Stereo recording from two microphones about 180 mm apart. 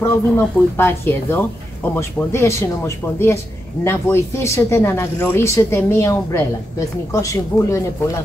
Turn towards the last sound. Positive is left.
turn(degrees=15)  # may be behind; listen again after turning